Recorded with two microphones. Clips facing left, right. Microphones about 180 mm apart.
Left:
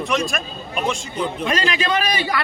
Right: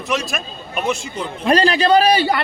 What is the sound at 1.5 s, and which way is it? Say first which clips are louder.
Speech: right 10 dB; 35° right (ahead or behind).